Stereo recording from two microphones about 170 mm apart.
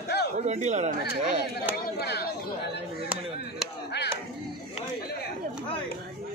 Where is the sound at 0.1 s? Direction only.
75° left (ahead or behind).